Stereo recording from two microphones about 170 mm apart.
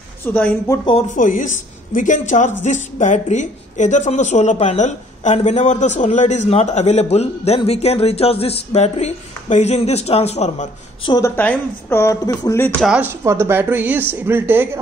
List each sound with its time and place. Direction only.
0.2 s speech: 10° left (ahead or behind)
1.1 s a woman's voice: 50° left (ahead or behind)
11.1 s speech: 20° left (ahead or behind)
12.8 s speech: 5° right (ahead or behind)
13.2 s speech: 15° right (ahead or behind)